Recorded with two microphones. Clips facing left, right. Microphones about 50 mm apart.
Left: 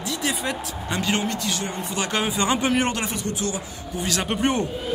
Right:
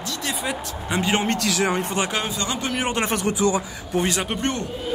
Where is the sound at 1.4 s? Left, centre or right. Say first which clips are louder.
Right 6 dB; right.